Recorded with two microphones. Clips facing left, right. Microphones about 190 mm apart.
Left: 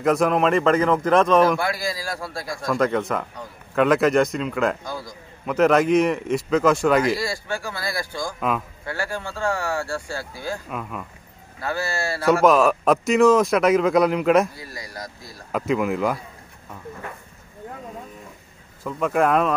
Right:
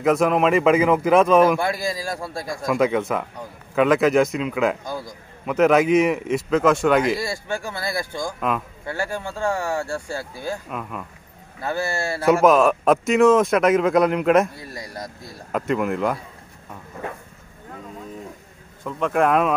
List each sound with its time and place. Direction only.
0.0 s speech: centre (ahead or behind)
1.6 s speech: 20° right (ahead or behind)
2.6 s speech: 5° right (ahead or behind)
4.8 s speech: 15° right (ahead or behind)
5.4 s speech: 5° right (ahead or behind)
7.2 s speech: 20° right (ahead or behind)
8.4 s speech: centre (ahead or behind)
8.8 s speech: 20° right (ahead or behind)
10.7 s speech: centre (ahead or behind)
11.6 s speech: 20° right (ahead or behind)
12.3 s speech: 5° right (ahead or behind)
15.5 s speech: centre (ahead or behind)
18.9 s speech: centre (ahead or behind)